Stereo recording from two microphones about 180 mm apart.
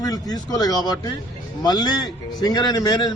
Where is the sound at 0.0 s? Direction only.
20° left (ahead or behind).